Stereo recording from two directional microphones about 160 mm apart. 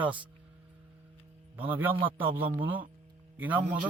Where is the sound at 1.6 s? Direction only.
10° right (ahead or behind).